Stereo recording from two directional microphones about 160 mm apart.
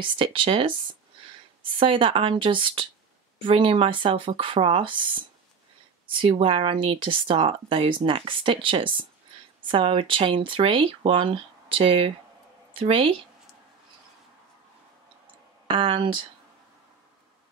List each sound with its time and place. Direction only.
0.0 s speech: 30° right (ahead or behind)
15.6 s speech: 35° right (ahead or behind)